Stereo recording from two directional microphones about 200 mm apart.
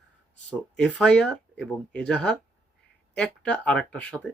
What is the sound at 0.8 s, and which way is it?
Speech, 5° left (ahead or behind).